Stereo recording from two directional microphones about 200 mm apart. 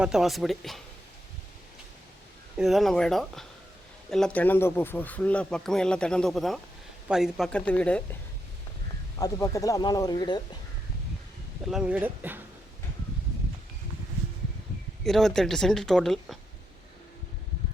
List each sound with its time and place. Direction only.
0.0 s speech: centre (ahead or behind)
2.6 s speech: centre (ahead or behind)
9.1 s speech: 15° left (ahead or behind)
11.7 s speech: 5° right (ahead or behind)
15.0 s speech: centre (ahead or behind)